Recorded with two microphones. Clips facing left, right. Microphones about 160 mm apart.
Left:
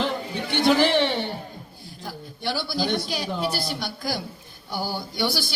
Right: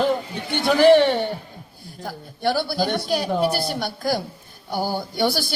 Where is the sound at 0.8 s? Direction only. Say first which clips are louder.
Right 7 dB; 50° right (ahead or behind).